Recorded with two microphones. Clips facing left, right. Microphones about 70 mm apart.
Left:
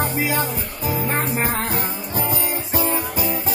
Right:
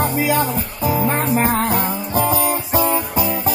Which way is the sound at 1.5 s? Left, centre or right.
Right.